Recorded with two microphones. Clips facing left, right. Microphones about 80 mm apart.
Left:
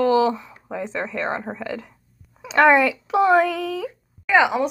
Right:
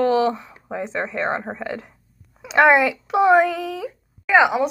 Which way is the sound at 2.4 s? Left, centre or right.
Centre.